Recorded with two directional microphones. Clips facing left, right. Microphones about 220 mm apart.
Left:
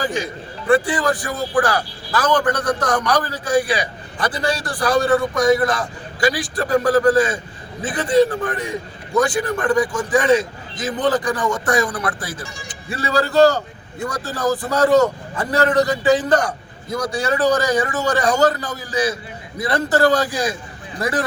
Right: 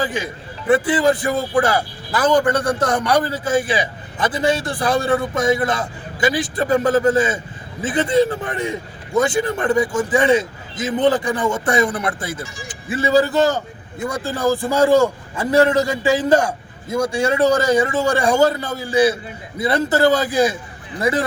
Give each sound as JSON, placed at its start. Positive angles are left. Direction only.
{"t": 0.7, "sound": "a man's voice", "side_deg": -20}
{"t": 2.4, "sound": "a man's voice", "side_deg": -10}
{"t": 2.9, "sound": "a man's voice", "side_deg": -25}
{"t": 18.3, "sound": "a man's voice", "side_deg": -10}
{"t": 18.9, "sound": "a man's voice", "side_deg": -30}